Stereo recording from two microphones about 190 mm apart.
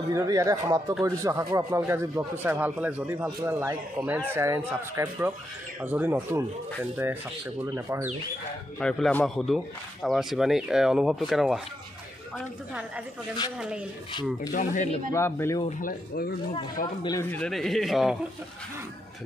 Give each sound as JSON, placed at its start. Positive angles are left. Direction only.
{"t": 0.1, "sound": "speech", "side_deg": -15}
{"t": 8.7, "sound": "speech", "side_deg": 5}
{"t": 14.5, "sound": "speech", "side_deg": 40}
{"t": 15.0, "sound": "speech", "side_deg": 15}
{"t": 17.0, "sound": "speech", "side_deg": 20}
{"t": 17.3, "sound": "speech", "side_deg": 5}